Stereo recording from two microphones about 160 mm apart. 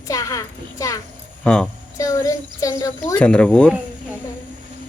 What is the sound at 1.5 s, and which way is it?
Speech, 5° left (ahead or behind).